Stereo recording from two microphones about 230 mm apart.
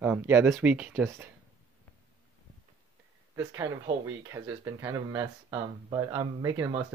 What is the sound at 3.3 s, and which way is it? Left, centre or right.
Speech, centre.